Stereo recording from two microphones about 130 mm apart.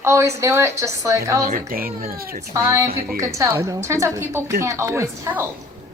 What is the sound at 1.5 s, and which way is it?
Speech, 90° right.